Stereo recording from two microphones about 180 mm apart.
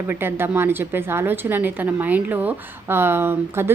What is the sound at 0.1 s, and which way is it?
A woman's voice, 10° right (ahead or behind).